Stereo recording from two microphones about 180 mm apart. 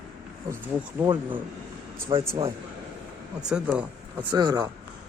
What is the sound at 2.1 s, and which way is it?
Speech, 30° right (ahead or behind).